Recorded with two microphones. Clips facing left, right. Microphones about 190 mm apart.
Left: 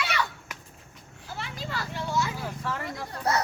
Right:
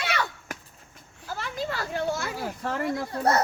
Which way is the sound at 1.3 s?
50° right (ahead or behind).